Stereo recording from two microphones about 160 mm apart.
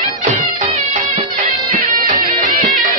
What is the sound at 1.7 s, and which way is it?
Music, 60° right (ahead or behind).